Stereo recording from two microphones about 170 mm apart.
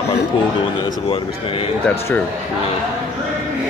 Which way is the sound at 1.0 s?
35° left (ahead or behind).